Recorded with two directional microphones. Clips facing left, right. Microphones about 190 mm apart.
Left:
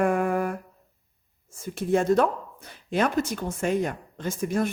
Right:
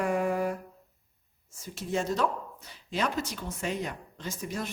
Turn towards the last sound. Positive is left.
turn(degrees=55)  # may be behind; listen again after turning